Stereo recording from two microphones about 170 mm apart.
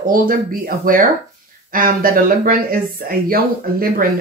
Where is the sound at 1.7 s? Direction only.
55° right (ahead or behind).